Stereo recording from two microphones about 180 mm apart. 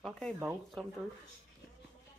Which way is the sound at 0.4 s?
5° right (ahead or behind).